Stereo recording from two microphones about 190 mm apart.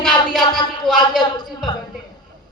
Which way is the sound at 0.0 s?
Centre (ahead or behind).